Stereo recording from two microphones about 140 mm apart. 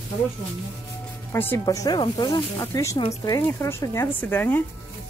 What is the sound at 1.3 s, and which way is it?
Speech, 15° left (ahead or behind).